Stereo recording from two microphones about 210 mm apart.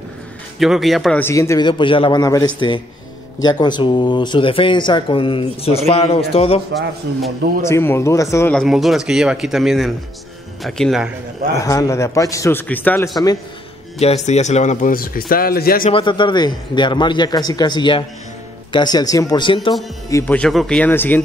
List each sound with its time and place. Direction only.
0.6 s a man's voice: centre (ahead or behind); by 6.6 s 30° left (ahead or behind)
7.6 s speech: 10° left (ahead or behind)
11.6 s a man's voice: 15° left (ahead or behind)
13.9 s speech: 30° left (ahead or behind)
15.8 s speech: 25° left (ahead or behind)
20.1 s a man's voice: 10° left (ahead or behind)